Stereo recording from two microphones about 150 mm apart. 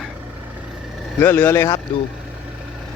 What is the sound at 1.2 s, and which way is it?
Speech, 15° left (ahead or behind).